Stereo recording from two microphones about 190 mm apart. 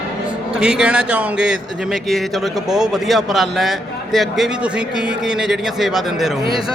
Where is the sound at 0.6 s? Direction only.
5° right (ahead or behind).